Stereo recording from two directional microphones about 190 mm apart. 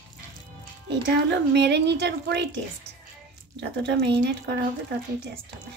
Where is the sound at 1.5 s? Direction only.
65° right (ahead or behind).